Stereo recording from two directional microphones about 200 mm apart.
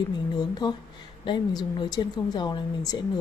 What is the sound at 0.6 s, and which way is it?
Speech, 20° left (ahead or behind).